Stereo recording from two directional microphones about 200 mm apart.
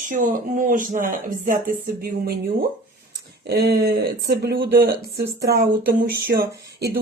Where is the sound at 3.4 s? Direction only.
55° right (ahead or behind).